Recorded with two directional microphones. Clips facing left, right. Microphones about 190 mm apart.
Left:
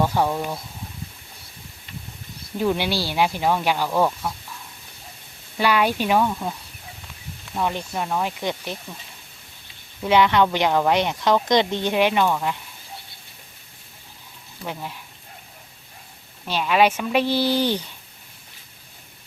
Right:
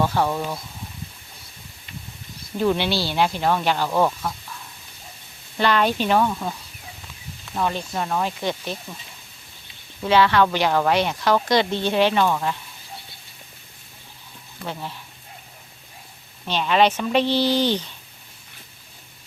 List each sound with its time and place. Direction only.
0.0 s a woman's voice: 15° left (ahead or behind)
2.6 s a woman's voice: 10° left (ahead or behind)
5.5 s a woman's voice: 10° left (ahead or behind)
7.9 s a woman's voice: 10° left (ahead or behind)
10.0 s a woman's voice: 15° left (ahead or behind)
14.7 s a woman's voice: 10° left (ahead or behind)
16.5 s a woman's voice: 10° left (ahead or behind)